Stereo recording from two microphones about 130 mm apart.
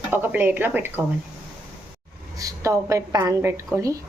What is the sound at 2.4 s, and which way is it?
A woman's voice, 25° right (ahead or behind).